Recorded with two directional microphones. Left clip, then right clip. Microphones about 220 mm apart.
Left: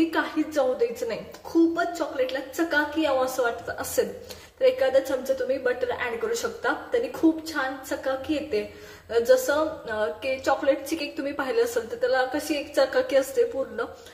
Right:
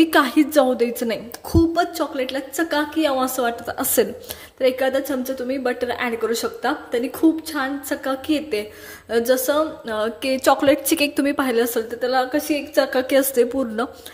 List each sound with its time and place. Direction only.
0.1 s a woman's voice: 50° right (ahead or behind)